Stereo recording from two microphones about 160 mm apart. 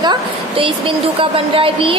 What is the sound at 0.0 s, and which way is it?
Speech, 30° right (ahead or behind).